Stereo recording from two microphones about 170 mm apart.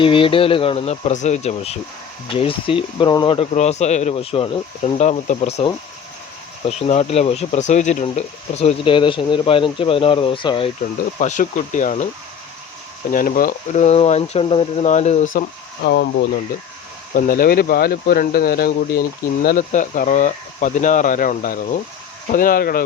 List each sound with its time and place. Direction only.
0.0 s speech: 30° left (ahead or behind)
11.2 s speech: 45° left (ahead or behind)
13.1 s speech: 55° left (ahead or behind)
15.8 s speech: 90° left
17.2 s speech: 55° left (ahead or behind)